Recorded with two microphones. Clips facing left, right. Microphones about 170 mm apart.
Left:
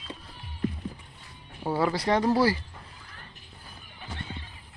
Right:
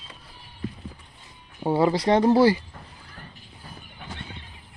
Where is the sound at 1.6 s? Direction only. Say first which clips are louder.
Right 5 dB; 25° right (ahead or behind).